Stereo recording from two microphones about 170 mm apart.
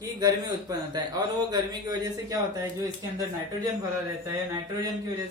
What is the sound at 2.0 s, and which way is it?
Speech, 20° right (ahead or behind).